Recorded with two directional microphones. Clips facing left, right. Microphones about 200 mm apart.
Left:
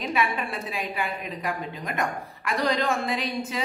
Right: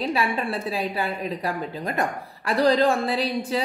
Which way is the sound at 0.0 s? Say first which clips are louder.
Right 2 dB; 30° right (ahead or behind).